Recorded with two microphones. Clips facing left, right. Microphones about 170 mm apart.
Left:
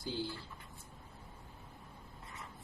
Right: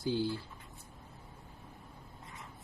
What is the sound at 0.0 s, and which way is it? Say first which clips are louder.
Speech: right 7 dB; 55° right (ahead or behind).